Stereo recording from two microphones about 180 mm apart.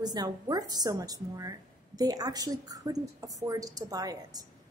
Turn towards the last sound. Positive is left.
turn(degrees=-20)  # may be behind; listen again after turning